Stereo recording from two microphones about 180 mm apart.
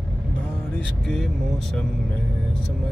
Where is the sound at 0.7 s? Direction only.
Centre (ahead or behind).